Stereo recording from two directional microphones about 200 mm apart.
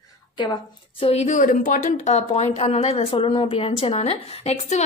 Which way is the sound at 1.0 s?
30° left (ahead or behind).